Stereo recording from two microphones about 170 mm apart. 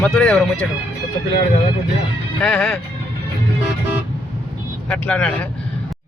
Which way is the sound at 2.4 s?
5° left (ahead or behind).